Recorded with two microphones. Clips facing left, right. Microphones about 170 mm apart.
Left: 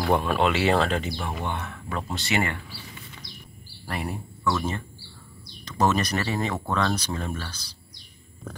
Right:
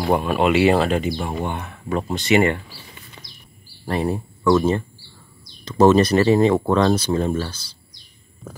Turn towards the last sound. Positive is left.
turn(degrees=-25)  # may be behind; listen again after turning